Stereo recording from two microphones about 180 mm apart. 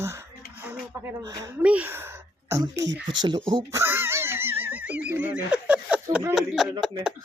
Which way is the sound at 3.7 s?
10° right (ahead or behind).